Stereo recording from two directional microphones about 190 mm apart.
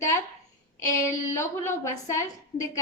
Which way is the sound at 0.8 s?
15° left (ahead or behind).